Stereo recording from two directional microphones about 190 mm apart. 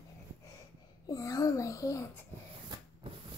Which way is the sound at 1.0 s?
20° left (ahead or behind).